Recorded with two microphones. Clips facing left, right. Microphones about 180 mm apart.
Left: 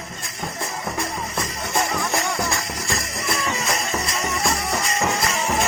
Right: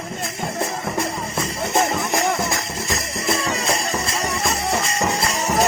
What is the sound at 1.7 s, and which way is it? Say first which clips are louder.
Music: right 3 dB; 20° right (ahead or behind).